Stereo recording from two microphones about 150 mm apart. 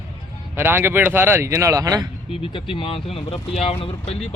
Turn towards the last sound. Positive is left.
turn(degrees=40)  # may be behind; listen again after turning